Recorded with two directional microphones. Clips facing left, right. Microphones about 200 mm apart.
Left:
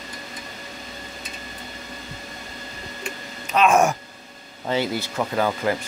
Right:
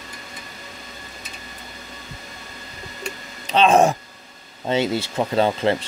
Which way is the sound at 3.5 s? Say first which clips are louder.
Right 2 dB; 30° right (ahead or behind).